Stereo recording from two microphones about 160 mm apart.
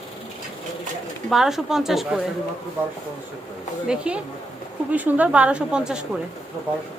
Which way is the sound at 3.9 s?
5° right (ahead or behind).